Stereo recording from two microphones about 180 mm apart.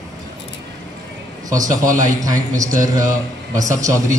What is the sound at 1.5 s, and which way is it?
A man's voice, 20° right (ahead or behind).